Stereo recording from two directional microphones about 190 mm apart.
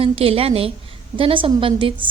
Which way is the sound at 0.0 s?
30° right (ahead or behind).